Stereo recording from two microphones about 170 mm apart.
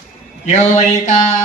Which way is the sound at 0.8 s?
45° left (ahead or behind).